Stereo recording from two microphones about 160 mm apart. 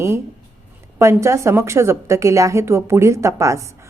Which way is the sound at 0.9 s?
15° right (ahead or behind).